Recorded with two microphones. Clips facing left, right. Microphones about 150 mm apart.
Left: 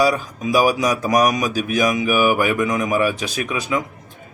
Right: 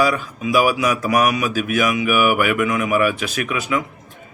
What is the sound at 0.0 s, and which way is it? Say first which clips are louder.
A man's voice: left 1 dB; 35° left (ahead or behind).